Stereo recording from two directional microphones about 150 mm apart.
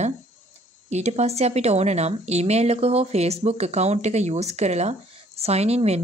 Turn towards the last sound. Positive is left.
turn(degrees=-45)  # may be behind; listen again after turning